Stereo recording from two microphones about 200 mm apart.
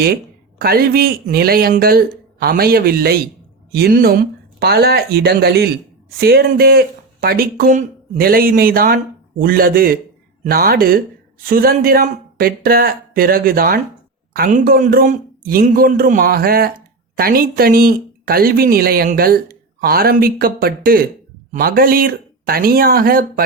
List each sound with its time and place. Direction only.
0.6 s speech: 50° right (ahead or behind)